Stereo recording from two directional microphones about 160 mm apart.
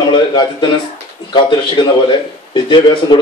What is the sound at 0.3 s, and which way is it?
A man's voice, 30° left (ahead or behind).